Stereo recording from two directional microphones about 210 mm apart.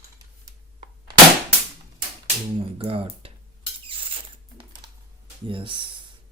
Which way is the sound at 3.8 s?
25° right (ahead or behind).